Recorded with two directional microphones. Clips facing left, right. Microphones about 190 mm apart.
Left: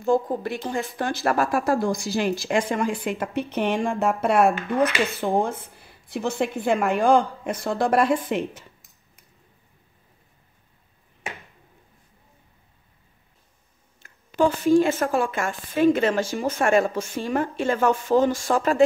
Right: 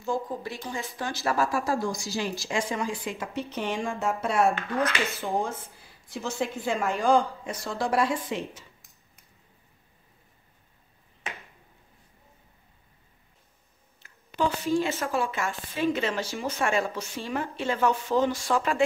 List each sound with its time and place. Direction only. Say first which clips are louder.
0.0 s speech: left 8 dB; 55° left (ahead or behind)
4.6 s speech: left 6 dB; 15° left (ahead or behind)
5.2 s speech: left 6 dB; 60° left (ahead or behind)
14.0 s a woman's voice: left 7 dB; 50° left (ahead or behind)